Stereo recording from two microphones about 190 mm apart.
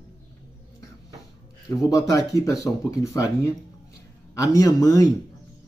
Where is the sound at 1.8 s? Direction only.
20° left (ahead or behind).